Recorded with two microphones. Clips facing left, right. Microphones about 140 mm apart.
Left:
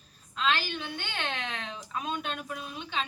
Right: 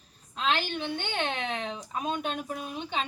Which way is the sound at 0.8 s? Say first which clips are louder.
Right 5 dB; 20° right (ahead or behind).